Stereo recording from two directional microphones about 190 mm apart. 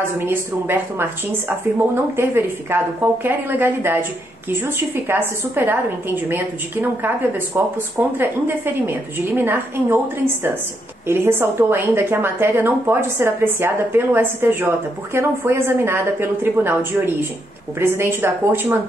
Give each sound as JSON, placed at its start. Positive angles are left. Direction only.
{"t": 0.0, "sound": "a woman's voice", "side_deg": -10}
{"t": 2.1, "sound": "a woman's voice", "side_deg": -10}